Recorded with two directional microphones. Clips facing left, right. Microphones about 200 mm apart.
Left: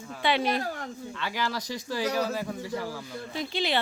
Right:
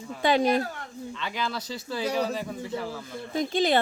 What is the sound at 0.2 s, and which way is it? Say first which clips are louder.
Speech: right 4 dB; 45° right (ahead or behind).